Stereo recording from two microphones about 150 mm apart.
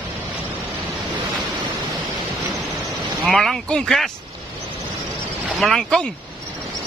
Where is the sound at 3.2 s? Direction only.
Centre (ahead or behind).